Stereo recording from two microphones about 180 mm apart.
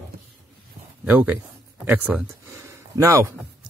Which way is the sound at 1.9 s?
10° right (ahead or behind).